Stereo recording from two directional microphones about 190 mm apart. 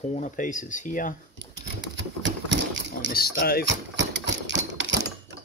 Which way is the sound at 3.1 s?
55° left (ahead or behind).